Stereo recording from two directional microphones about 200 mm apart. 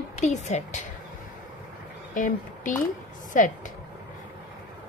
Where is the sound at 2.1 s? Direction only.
40° left (ahead or behind).